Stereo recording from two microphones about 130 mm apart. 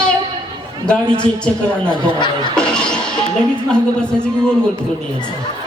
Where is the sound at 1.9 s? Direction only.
35° left (ahead or behind).